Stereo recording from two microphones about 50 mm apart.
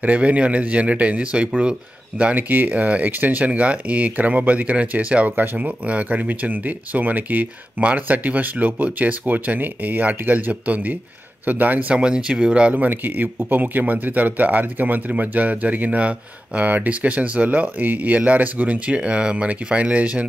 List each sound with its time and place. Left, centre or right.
0.0 s speech: right
2.3 s speech: right
5.3 s speech: right
12.0 s speech: centre
12.7 s speech: right